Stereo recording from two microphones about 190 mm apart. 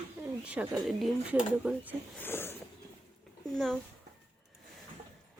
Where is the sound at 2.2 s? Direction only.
10° left (ahead or behind).